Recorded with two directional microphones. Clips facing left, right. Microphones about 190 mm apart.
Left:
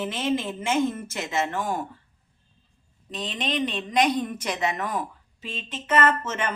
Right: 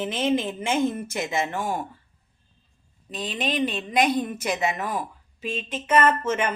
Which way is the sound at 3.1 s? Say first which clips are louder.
Right 1 dB; 10° right (ahead or behind).